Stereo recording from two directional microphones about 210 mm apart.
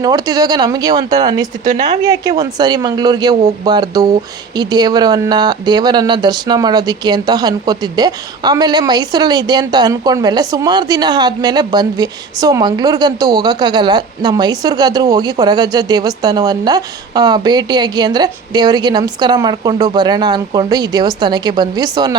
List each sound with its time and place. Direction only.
0.0 s speech: 20° right (ahead or behind)